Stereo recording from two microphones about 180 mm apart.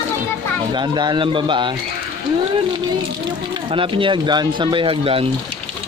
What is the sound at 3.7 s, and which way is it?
Speech, 30° right (ahead or behind).